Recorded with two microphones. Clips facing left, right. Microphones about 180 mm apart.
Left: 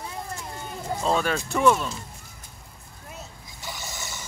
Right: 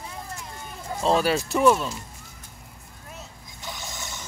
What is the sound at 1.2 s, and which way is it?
Speech, 5° right (ahead or behind).